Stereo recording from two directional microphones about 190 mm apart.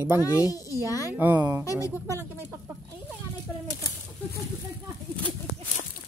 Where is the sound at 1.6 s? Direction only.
15° left (ahead or behind).